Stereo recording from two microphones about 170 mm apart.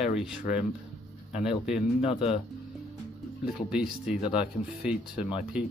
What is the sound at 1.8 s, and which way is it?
Speech, 35° left (ahead or behind).